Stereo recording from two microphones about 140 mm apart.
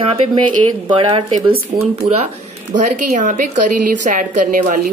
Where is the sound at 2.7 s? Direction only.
60° right (ahead or behind).